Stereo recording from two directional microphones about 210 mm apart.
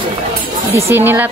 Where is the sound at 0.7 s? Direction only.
10° right (ahead or behind).